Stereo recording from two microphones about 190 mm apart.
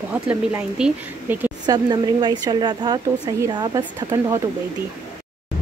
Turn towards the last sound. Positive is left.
turn(degrees=-15)  # may be behind; listen again after turning